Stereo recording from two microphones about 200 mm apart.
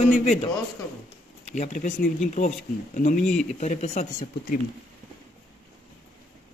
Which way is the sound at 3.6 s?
35° left (ahead or behind).